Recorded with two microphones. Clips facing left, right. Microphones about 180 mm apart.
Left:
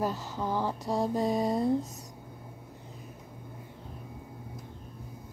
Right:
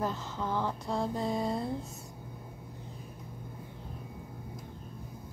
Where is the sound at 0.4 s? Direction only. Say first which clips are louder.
Left 2 dB; 10° left (ahead or behind).